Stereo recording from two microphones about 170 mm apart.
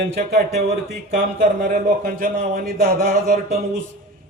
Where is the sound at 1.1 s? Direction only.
50° right (ahead or behind).